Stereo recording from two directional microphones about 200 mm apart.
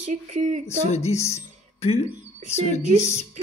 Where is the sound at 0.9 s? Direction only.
35° left (ahead or behind).